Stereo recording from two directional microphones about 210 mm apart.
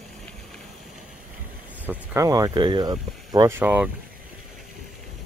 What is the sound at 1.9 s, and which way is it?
Speech, 15° right (ahead or behind).